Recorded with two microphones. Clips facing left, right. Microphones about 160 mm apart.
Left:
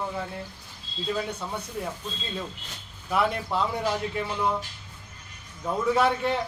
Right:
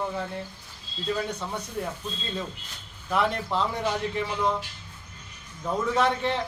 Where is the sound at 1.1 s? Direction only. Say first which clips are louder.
Right 1 dB; 5° left (ahead or behind).